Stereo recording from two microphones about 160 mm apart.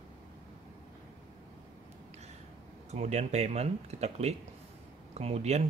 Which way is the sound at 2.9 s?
45° right (ahead or behind).